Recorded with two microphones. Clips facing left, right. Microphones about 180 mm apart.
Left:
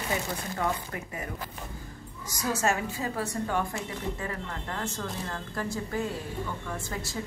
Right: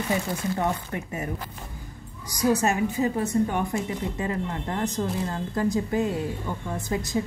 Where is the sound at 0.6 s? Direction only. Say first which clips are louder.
Right 4 dB; 25° right (ahead or behind).